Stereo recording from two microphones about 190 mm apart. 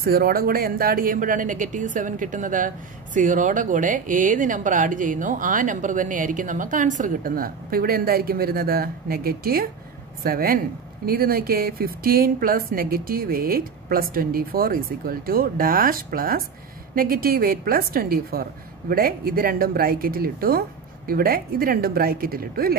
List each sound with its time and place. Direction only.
0.0 s speech: 50° right (ahead or behind)